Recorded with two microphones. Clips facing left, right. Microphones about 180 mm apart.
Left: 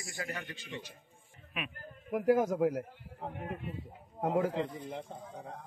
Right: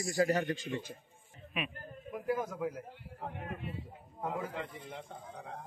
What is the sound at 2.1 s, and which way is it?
Speech, 80° left.